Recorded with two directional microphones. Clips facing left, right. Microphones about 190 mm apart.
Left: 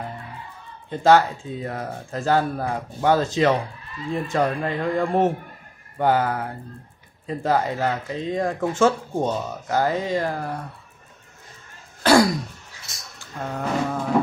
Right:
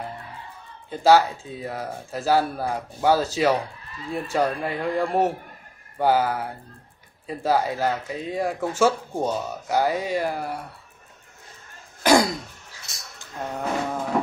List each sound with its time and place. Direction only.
0.8 s speech: 10° right (ahead or behind)
12.0 s throat clearing: 20° right (ahead or behind)
13.5 s a sound: 10° right (ahead or behind)